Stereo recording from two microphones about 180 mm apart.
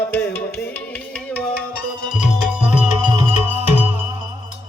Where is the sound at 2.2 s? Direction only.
5° right (ahead or behind).